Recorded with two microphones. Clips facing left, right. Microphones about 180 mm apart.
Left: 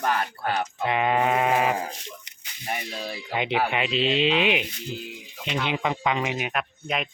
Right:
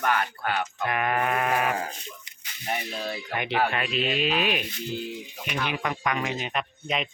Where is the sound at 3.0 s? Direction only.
15° left (ahead or behind).